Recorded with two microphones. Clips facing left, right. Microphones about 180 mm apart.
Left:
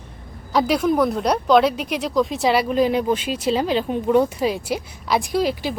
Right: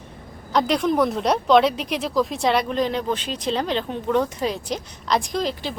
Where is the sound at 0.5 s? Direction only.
5° left (ahead or behind).